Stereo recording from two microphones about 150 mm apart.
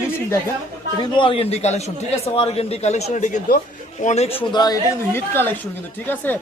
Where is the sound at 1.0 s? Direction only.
35° left (ahead or behind).